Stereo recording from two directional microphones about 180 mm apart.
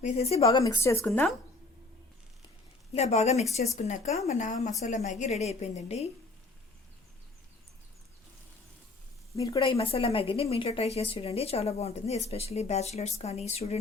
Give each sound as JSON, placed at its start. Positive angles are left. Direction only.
{"t": 0.0, "sound": "speech", "side_deg": 35}
{"t": 0.6, "sound": "speech", "side_deg": 15}
{"t": 2.9, "sound": "speech", "side_deg": 35}
{"t": 9.3, "sound": "speech", "side_deg": 20}